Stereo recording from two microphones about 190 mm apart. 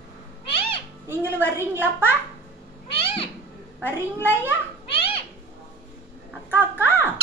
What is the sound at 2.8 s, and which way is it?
Cat, 30° left (ahead or behind).